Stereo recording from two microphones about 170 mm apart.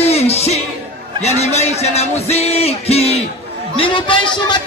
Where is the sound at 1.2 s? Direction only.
40° left (ahead or behind).